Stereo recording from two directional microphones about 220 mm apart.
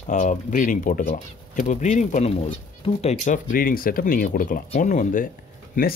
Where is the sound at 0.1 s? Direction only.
35° left (ahead or behind).